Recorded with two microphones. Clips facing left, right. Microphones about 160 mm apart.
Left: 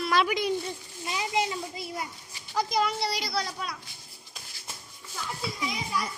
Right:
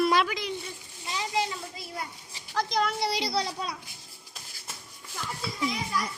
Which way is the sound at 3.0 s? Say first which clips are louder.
Right 2 dB; 25° right (ahead or behind).